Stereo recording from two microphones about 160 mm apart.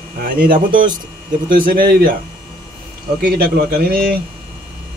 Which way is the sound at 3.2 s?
70° right (ahead or behind).